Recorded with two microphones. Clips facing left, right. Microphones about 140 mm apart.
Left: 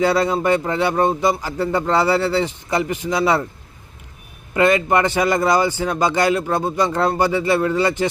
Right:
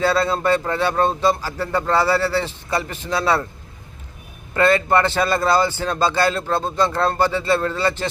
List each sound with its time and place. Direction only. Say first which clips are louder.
0.0 s a man's voice: left 2 dB; 15° left (ahead or behind)
4.5 s a man's voice: left 1 dB; 15° left (ahead or behind)